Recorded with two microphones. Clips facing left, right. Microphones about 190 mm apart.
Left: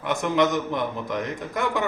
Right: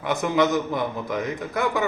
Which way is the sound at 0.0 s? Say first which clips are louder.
Right 1 dB; 5° right (ahead or behind).